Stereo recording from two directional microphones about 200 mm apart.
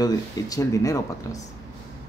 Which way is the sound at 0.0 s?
20° left (ahead or behind).